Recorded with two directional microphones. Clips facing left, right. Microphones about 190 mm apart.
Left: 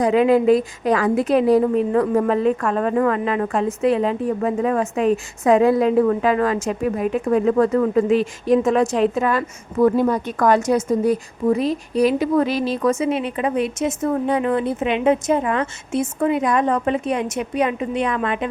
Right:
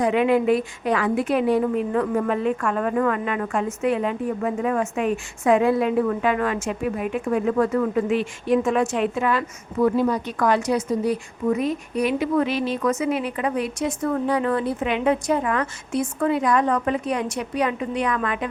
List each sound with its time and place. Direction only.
0.0 s a woman's voice: 35° left (ahead or behind)
11.4 s a woman's voice: 35° left (ahead or behind)